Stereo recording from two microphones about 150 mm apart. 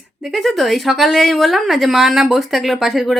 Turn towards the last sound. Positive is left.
turn(degrees=0)  # may be behind; listen again after turning